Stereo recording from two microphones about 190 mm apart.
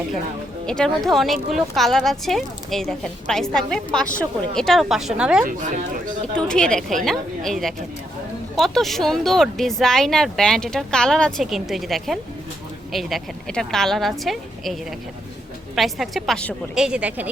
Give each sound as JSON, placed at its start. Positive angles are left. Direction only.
{"t": 0.6, "sound": "speech", "side_deg": 5}
{"t": 5.5, "sound": "speech", "side_deg": -45}
{"t": 6.3, "sound": "speech", "side_deg": 5}